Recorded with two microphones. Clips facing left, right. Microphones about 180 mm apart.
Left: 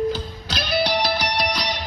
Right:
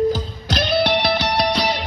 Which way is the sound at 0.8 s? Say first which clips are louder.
Right 1 dB; 60° right (ahead or behind).